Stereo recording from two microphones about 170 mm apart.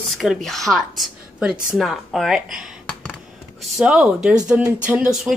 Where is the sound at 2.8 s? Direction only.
5° left (ahead or behind).